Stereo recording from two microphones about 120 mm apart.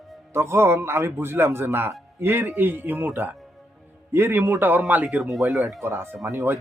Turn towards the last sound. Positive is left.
turn(degrees=-25)  # may be behind; listen again after turning